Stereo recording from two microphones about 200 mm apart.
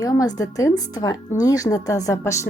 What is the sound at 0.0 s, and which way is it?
Speech, 20° left (ahead or behind).